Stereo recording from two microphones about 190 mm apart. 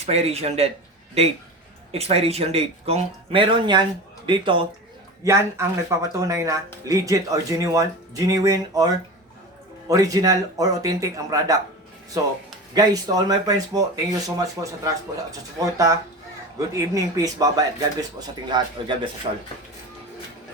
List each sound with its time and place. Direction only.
0.0 s speech: 35° right (ahead or behind)
1.9 s speech: 30° right (ahead or behind)
5.2 s speech: 15° right (ahead or behind)